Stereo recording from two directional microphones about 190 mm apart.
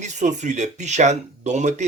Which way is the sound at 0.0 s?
40° right (ahead or behind).